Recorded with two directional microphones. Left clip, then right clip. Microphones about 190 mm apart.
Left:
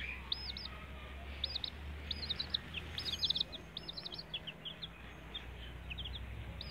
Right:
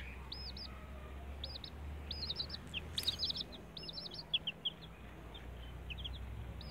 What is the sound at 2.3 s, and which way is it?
Bird, 15° right (ahead or behind).